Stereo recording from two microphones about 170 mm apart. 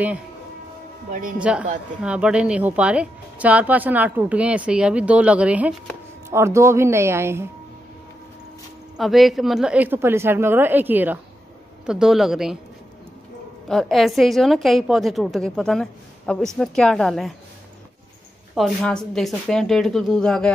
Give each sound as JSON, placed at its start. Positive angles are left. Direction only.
{"t": 1.4, "sound": "a woman's voice", "side_deg": -5}
{"t": 8.9, "sound": "a woman's voice", "side_deg": 0}
{"t": 13.7, "sound": "a woman's voice", "side_deg": 0}
{"t": 18.5, "sound": "a woman's voice", "side_deg": 0}